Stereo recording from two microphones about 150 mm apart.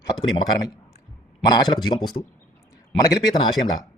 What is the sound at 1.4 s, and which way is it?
Speech, 25° left (ahead or behind).